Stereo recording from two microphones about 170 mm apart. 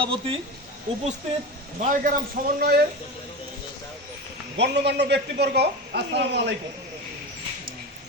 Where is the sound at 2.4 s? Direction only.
55° right (ahead or behind).